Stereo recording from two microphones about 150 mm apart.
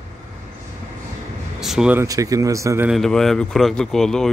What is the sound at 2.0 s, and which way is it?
Speech, 20° right (ahead or behind).